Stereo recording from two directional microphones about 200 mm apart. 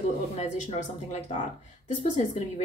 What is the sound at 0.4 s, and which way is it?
A woman's voice, 35° left (ahead or behind).